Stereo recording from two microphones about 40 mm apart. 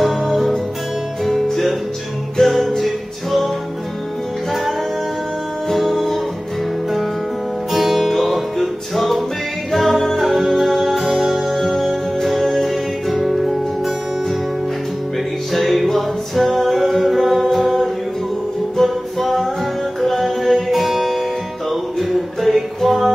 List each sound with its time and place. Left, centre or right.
0.0 s music: centre
5.7 s music: centre
7.7 s music: centre
15.5 s music: centre